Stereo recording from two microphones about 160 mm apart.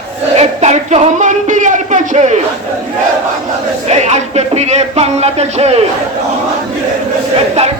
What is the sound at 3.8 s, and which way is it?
Speech, 45° right (ahead or behind).